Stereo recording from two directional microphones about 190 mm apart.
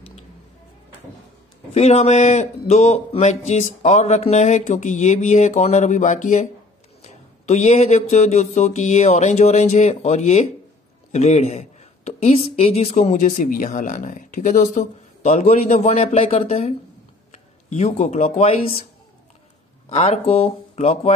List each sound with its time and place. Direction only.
1.7 s a woman's voice: 35° left (ahead or behind)
19.9 s a woman's voice: 35° left (ahead or behind)